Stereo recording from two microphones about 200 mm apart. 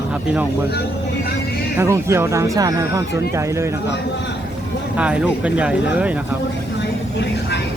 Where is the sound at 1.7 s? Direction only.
15° right (ahead or behind).